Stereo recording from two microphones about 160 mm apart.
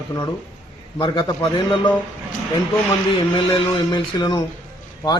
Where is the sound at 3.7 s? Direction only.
30° left (ahead or behind).